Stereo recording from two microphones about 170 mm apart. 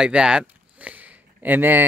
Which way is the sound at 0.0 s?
5° right (ahead or behind).